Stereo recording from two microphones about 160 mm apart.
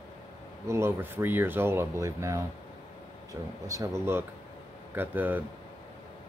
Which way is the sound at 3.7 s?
20° right (ahead or behind).